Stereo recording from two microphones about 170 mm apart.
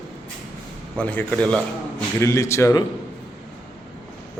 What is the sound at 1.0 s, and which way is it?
Speech, 10° left (ahead or behind).